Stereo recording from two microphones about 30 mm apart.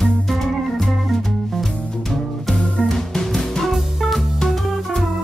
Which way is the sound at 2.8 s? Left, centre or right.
Centre.